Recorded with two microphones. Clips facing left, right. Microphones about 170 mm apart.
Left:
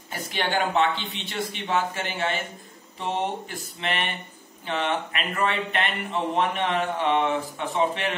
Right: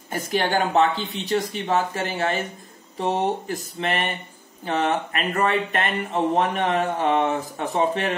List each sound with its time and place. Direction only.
0.1 s speech: 45° right (ahead or behind)